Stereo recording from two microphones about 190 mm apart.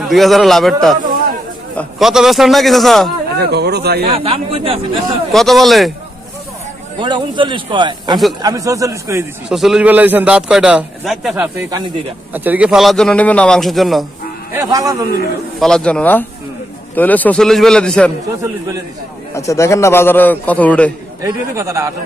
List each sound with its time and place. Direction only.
0.1 s a man's voice: centre (ahead or behind)
3.3 s speech: 60° right (ahead or behind)
4.0 s a man's voice: 30° right (ahead or behind)
5.3 s a man's voice: centre (ahead or behind)
7.0 s speech: 25° right (ahead or behind)
9.5 s a man's voice: centre (ahead or behind)
14.5 s speech: 15° right (ahead or behind)
15.6 s a man's voice: 5° left (ahead or behind)
19.3 s a man's voice: 15° left (ahead or behind)
21.2 s speech: 15° right (ahead or behind)